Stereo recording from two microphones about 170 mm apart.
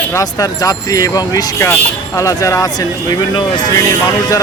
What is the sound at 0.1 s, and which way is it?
Speech, 20° left (ahead or behind).